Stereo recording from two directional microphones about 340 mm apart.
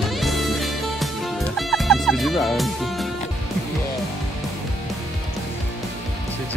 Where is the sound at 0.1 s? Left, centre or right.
Centre.